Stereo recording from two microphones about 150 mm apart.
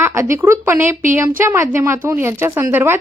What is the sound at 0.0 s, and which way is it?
A woman's voice, 20° right (ahead or behind).